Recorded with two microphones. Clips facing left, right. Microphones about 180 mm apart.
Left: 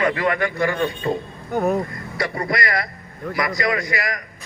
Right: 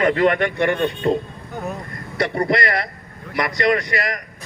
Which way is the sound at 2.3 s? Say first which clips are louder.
Right 7 dB; 30° right (ahead or behind).